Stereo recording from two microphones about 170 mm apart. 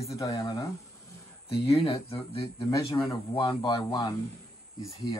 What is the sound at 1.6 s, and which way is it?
Speech, 35° left (ahead or behind).